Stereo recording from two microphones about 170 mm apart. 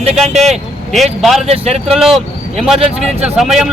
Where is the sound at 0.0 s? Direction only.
40° right (ahead or behind).